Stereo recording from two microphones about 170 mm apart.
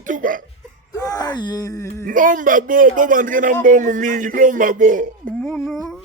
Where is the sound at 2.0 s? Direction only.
50° right (ahead or behind).